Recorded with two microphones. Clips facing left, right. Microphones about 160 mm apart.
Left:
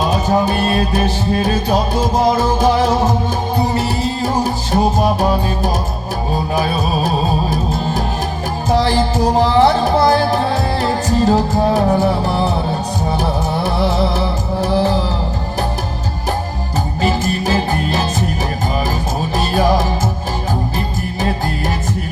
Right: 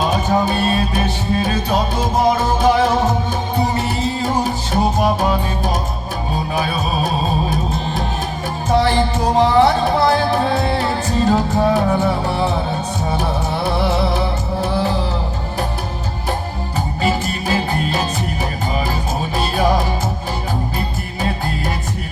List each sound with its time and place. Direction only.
0.1 s music: 40° left (ahead or behind)
3.8 s music: 40° left (ahead or behind)
8.8 s music: 40° left (ahead or behind)
14.7 s music: 40° left (ahead or behind)
17.0 s music: 40° left (ahead or behind)